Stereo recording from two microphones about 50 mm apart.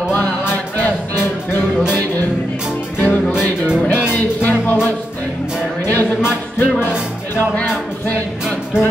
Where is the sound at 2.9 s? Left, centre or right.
Left.